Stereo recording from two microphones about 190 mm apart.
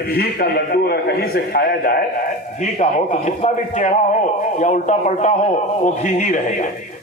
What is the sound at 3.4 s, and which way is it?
A man's voice, 35° left (ahead or behind).